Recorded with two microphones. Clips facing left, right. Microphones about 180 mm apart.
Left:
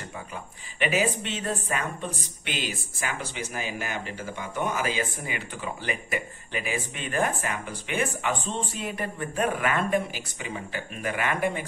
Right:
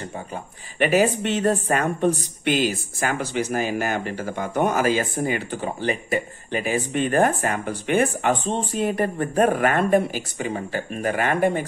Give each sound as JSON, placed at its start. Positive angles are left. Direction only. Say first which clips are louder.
{"t": 0.7, "sound": "speech", "louder": "right 7 dB", "side_deg": -50}